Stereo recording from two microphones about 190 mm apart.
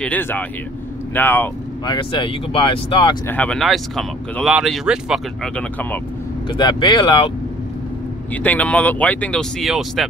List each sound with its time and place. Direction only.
0.0 s speech: 10° left (ahead or behind)
1.9 s speech: 25° left (ahead or behind)
3.3 s speech: 5° left (ahead or behind)
6.5 s speech: 25° left (ahead or behind)
8.3 s speech: 10° left (ahead or behind)